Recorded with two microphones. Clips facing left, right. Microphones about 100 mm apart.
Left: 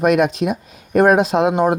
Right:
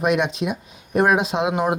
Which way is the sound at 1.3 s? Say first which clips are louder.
Left 6 dB; 40° left (ahead or behind).